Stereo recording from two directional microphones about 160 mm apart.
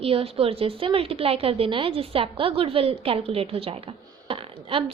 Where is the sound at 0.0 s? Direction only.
40° right (ahead or behind).